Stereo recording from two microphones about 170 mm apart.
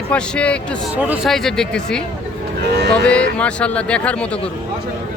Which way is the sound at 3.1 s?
5° left (ahead or behind).